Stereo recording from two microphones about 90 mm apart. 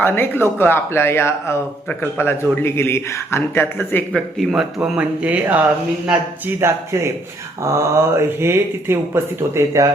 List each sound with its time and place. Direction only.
0.0 s a man's voice: 25° left (ahead or behind)
4.1 s speech: centre (ahead or behind)
4.8 s speech: 15° right (ahead or behind)
6.6 s speech: 30° right (ahead or behind)